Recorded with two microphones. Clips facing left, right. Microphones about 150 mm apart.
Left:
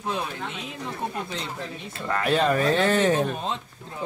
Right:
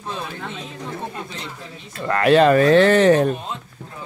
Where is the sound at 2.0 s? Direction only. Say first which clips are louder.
Right 8 dB; 80° right.